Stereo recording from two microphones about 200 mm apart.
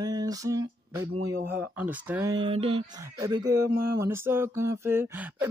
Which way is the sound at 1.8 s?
10° right (ahead or behind).